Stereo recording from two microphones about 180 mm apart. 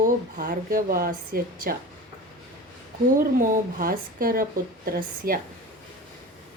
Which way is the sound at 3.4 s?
50° right (ahead or behind).